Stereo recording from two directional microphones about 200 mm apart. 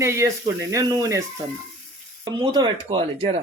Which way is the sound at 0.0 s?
15° right (ahead or behind).